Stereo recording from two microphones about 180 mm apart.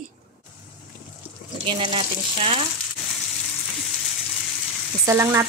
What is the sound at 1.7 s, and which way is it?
Speech, 30° right (ahead or behind).